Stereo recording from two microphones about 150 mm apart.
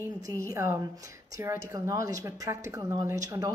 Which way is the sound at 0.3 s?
20° right (ahead or behind).